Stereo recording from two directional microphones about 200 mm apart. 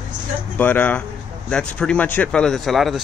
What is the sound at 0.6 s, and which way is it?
Speech, 10° left (ahead or behind).